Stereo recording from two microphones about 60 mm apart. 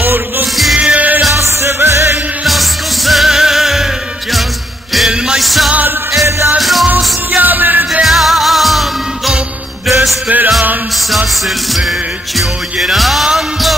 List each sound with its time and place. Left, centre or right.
0.0 s music: right
0.7 s music: right
1.3 s music: right
2.4 s music: centre
5.4 s music: centre
7.3 s music: right
8.0 s music: centre
10.2 s music: right
11.1 s music: centre
12.9 s music: centre